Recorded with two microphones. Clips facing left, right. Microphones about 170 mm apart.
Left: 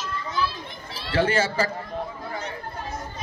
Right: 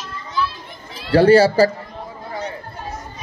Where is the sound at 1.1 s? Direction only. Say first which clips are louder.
Right 11 dB; 35° right (ahead or behind).